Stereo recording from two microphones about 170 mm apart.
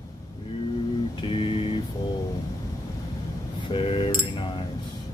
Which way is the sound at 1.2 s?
30° left (ahead or behind).